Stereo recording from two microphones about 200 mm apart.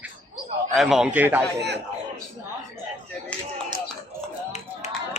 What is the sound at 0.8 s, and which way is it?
Speech, centre (ahead or behind).